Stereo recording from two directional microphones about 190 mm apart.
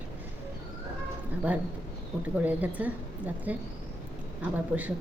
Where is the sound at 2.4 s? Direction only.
10° right (ahead or behind).